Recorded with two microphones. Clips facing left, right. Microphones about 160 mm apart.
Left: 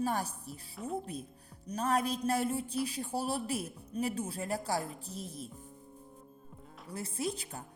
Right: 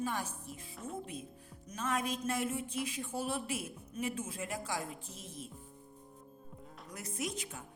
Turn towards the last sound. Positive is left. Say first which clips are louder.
# left 3 dB
turn(degrees=35)  # may be behind; listen again after turning